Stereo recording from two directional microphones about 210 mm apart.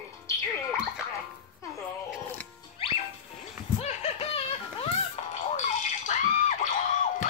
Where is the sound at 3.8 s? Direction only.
30° left (ahead or behind).